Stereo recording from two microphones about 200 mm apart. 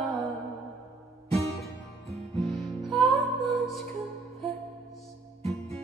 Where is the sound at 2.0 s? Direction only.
30° right (ahead or behind).